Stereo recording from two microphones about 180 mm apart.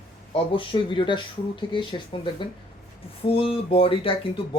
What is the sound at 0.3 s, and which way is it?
Speech, 30° left (ahead or behind).